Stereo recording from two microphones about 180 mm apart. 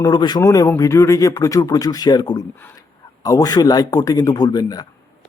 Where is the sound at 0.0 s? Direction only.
25° left (ahead or behind).